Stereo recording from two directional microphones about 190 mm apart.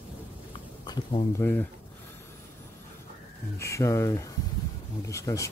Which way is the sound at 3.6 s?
15° left (ahead or behind).